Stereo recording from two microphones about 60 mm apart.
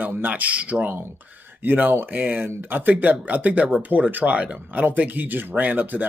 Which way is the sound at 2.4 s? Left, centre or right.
Right.